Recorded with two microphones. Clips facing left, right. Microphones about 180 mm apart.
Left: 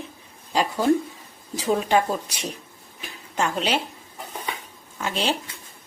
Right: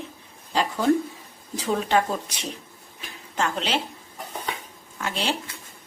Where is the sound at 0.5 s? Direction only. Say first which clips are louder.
Left 1 dB; 10° left (ahead or behind).